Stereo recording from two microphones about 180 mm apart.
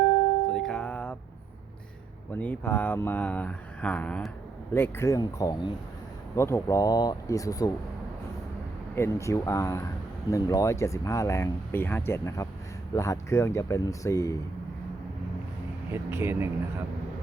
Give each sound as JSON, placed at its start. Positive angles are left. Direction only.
{"t": 0.5, "sound": "music", "side_deg": 5}
{"t": 2.3, "sound": "speech", "side_deg": 10}
{"t": 9.0, "sound": "speech", "side_deg": 15}
{"t": 15.9, "sound": "speech", "side_deg": -15}